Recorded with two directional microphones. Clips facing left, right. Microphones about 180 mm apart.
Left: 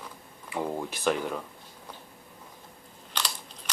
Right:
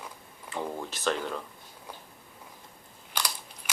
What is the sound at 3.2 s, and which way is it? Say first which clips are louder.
Biting: even; 10° right (ahead or behind).